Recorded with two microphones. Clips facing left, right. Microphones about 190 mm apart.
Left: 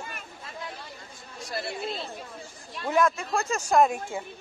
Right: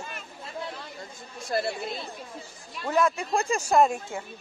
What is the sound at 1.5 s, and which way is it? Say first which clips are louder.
Speech: right 4 dB; 50° right (ahead or behind).